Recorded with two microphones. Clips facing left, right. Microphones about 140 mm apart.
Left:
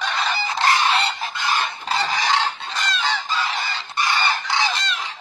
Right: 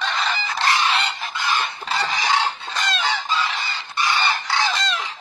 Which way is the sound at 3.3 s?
45° left (ahead or behind).